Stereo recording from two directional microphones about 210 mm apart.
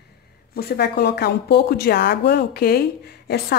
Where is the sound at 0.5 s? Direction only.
50° left (ahead or behind).